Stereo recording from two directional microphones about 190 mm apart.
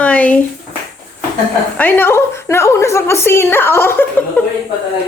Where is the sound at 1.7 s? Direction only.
10° left (ahead or behind).